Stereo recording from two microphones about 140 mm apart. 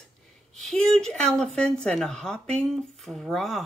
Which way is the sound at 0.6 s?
5° left (ahead or behind).